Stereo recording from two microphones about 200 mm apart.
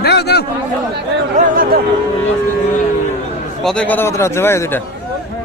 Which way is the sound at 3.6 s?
5° left (ahead or behind).